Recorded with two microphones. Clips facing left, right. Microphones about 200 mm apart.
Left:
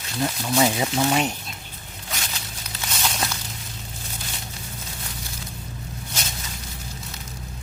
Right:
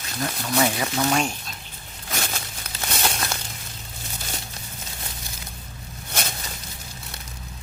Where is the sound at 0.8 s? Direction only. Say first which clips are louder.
Left 1 dB; 20° left (ahead or behind).